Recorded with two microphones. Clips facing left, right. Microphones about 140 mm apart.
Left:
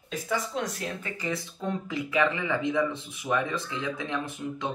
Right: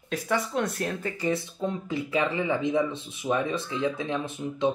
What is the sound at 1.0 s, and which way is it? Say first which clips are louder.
Speech: right 5 dB; 25° right (ahead or behind).